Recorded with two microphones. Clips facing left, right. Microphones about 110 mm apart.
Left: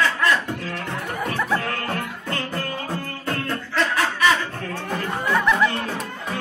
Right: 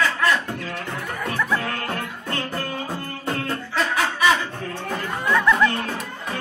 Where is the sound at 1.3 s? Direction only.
10° left (ahead or behind).